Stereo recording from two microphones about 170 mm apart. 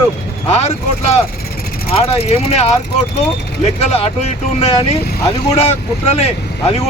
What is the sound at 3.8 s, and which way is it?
Speech, 35° left (ahead or behind).